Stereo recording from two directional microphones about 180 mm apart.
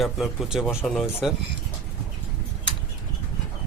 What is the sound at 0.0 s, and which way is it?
Speech, centre (ahead or behind).